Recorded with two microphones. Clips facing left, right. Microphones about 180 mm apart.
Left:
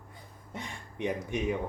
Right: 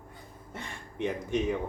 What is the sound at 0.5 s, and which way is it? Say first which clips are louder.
Speech: right 1 dB; 15° left (ahead or behind).